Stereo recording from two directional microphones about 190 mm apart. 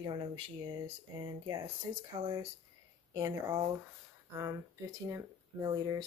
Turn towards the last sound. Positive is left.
turn(degrees=-20)  # may be behind; listen again after turning